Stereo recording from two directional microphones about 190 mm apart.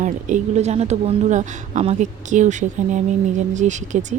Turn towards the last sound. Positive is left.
turn(degrees=-40)  # may be behind; listen again after turning